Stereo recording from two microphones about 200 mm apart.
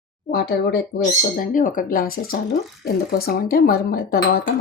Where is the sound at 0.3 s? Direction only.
50° left (ahead or behind).